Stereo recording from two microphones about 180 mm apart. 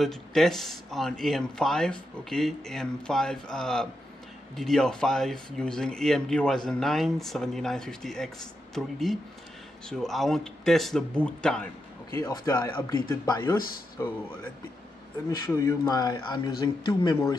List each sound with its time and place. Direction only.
0.0 s speech: centre (ahead or behind)
15.2 s speech: 15° left (ahead or behind)